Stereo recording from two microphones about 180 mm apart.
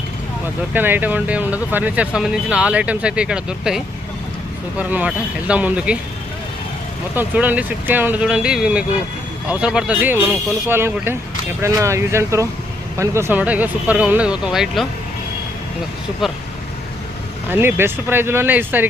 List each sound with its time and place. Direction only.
0.7 s speech: 10° right (ahead or behind)
7.2 s speech: 10° right (ahead or behind)
16.2 s speech: centre (ahead or behind)
17.5 s speech: 10° right (ahead or behind)